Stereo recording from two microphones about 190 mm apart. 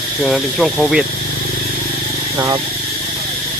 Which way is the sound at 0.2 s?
Centre (ahead or behind).